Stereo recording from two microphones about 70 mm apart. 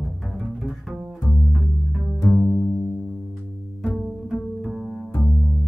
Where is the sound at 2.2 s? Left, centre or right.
Left.